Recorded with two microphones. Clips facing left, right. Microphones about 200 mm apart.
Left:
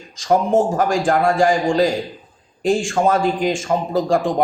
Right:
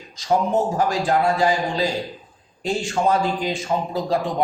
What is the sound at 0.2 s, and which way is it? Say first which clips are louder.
A man's voice: left 4 dB; 50° left (ahead or behind).